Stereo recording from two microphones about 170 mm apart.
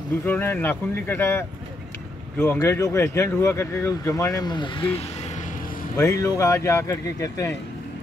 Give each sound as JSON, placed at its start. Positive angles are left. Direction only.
{"t": 0.2, "sound": "speech", "side_deg": 10}
{"t": 5.9, "sound": "speech", "side_deg": 15}